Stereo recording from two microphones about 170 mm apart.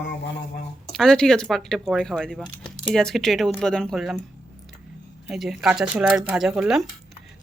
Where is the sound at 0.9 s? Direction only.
5° left (ahead or behind).